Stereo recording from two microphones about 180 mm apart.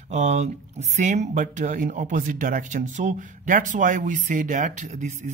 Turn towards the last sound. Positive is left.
turn(degrees=-40)  # may be behind; listen again after turning